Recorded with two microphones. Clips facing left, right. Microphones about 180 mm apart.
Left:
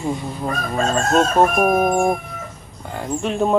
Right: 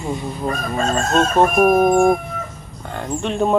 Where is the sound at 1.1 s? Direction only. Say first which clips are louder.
Even; 5° left (ahead or behind).